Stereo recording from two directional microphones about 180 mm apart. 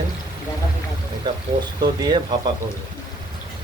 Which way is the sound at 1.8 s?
25° right (ahead or behind).